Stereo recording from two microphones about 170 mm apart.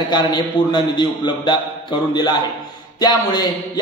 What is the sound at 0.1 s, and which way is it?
A man's voice, 25° left (ahead or behind).